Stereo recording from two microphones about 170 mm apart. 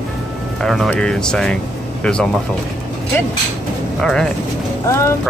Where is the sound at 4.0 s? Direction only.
5° left (ahead or behind).